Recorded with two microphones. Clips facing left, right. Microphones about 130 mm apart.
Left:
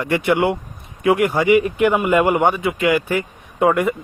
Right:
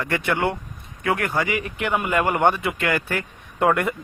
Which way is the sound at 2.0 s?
10° left (ahead or behind).